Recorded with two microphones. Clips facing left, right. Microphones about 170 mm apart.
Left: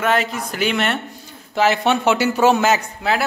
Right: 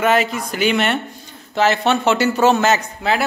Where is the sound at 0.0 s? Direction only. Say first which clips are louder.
Right 3 dB; 5° right (ahead or behind).